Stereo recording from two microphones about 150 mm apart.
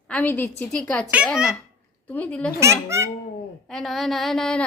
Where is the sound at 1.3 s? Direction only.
5° right (ahead or behind).